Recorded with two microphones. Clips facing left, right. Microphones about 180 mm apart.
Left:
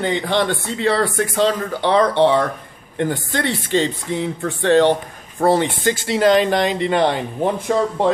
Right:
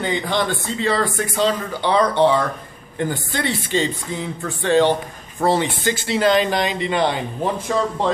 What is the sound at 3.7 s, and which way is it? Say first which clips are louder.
Speech: left 4 dB; 70° left (ahead or behind).